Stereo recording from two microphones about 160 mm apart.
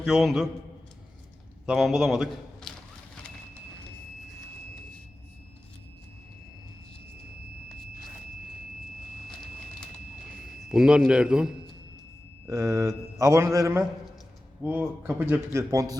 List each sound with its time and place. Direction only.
0.0 s a man's voice: centre (ahead or behind)
1.6 s a man's voice: 5° right (ahead or behind)
10.2 s a man's voice: 5° right (ahead or behind)
12.5 s speech: 20° right (ahead or behind)